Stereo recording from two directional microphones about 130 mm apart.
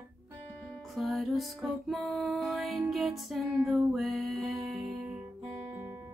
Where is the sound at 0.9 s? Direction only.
Centre (ahead or behind).